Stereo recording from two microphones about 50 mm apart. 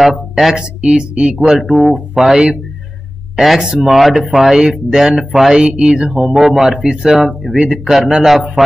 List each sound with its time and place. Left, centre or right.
0.0 s speech: centre
2.2 s speech: centre